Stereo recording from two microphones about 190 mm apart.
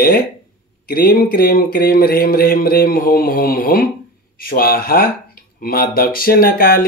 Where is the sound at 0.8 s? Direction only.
50° left (ahead or behind).